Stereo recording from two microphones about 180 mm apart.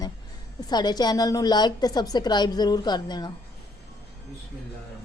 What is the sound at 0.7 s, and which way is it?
A woman's voice, 25° left (ahead or behind).